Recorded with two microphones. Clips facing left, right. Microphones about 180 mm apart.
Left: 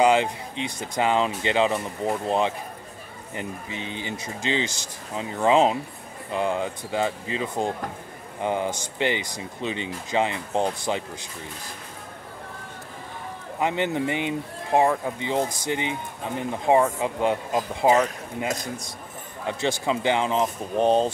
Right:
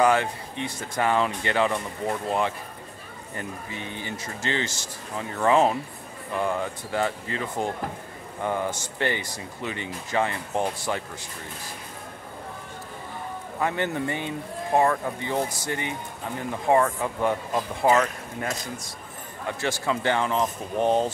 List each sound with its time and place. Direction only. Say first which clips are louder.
0.0 s speech: left 2 dB; 15° left (ahead or behind)
13.6 s speech: left 2 dB; 20° left (ahead or behind)